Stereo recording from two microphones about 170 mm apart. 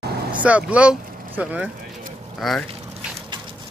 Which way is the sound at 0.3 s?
10° right (ahead or behind).